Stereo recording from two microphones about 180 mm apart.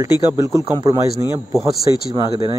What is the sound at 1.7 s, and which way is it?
Speech, 60° left (ahead or behind).